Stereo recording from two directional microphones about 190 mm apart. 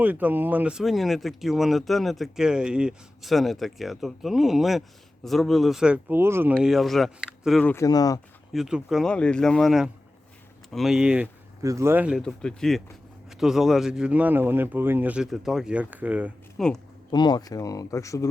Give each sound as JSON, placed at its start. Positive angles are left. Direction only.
{"t": 0.0, "sound": "speech", "side_deg": -10}
{"t": 7.6, "sound": "speech", "side_deg": 15}
{"t": 8.5, "sound": "speech", "side_deg": 0}
{"t": 11.6, "sound": "speech", "side_deg": -15}
{"t": 17.1, "sound": "speech", "side_deg": 20}